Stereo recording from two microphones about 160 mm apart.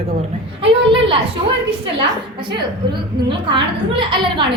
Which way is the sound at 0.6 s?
35° right (ahead or behind).